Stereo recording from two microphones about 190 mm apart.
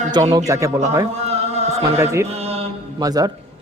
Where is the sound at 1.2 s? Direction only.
35° right (ahead or behind).